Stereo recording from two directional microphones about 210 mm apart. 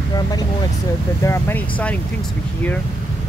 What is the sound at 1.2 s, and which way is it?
Speech, 10° left (ahead or behind).